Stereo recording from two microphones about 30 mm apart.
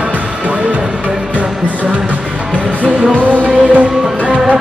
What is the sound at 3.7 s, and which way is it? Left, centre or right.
Music, right.